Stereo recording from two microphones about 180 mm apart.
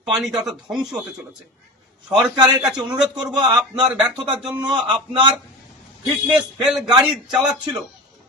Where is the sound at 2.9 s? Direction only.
5° right (ahead or behind).